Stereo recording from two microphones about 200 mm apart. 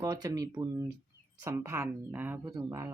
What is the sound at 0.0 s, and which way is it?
Speech, 20° right (ahead or behind).